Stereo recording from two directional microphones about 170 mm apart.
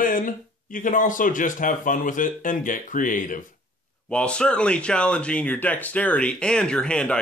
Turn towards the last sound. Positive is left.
turn(degrees=5)  # may be behind; listen again after turning